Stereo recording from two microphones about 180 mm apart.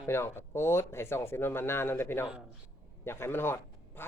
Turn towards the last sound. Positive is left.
turn(degrees=10)  # may be behind; listen again after turning